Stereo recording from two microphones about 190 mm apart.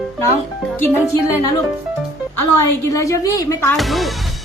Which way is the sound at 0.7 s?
10° left (ahead or behind).